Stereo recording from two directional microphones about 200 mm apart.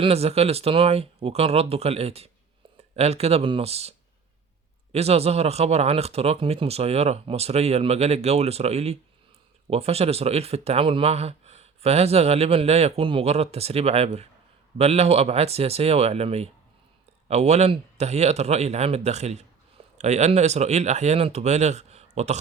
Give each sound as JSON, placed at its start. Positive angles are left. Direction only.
{"t": 0.0, "sound": "speech", "side_deg": -30}